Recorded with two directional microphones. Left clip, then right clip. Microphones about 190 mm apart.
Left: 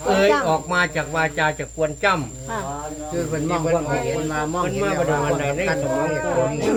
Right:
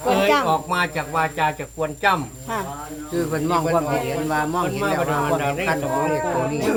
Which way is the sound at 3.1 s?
55° right (ahead or behind).